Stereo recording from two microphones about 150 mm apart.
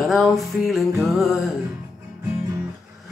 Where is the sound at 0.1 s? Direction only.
Centre (ahead or behind).